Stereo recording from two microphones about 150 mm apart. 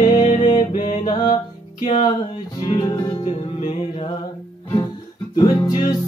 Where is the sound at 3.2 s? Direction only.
45° left (ahead or behind).